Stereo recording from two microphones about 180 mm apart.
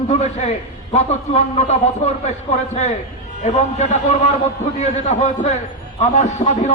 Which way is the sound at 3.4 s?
40° left (ahead or behind).